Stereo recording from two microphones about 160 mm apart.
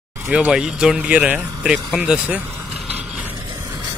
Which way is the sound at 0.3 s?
5° right (ahead or behind).